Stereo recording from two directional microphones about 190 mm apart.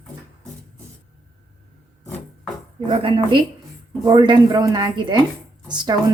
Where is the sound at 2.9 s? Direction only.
25° right (ahead or behind).